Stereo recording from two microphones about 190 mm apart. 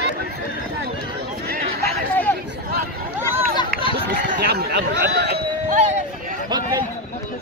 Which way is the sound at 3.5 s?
25° left (ahead or behind).